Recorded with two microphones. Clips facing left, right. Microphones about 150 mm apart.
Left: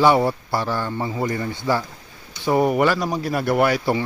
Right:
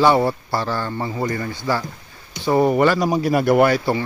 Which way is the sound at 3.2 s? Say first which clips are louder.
Right 5 dB; 5° right (ahead or behind).